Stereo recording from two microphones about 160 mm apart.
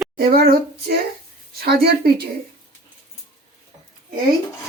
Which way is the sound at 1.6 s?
85° right.